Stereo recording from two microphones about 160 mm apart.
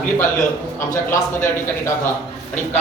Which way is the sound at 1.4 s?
15° left (ahead or behind).